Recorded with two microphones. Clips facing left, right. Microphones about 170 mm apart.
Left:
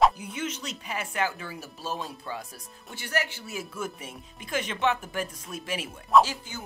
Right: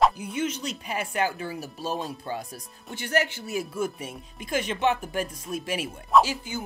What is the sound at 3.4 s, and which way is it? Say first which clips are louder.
Speech: right 6 dB; 15° right (ahead or behind).